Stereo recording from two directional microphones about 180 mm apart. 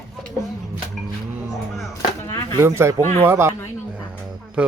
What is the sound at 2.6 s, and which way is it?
Speech, 15° right (ahead or behind).